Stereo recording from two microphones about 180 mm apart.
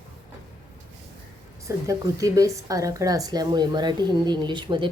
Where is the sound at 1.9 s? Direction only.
20° right (ahead or behind).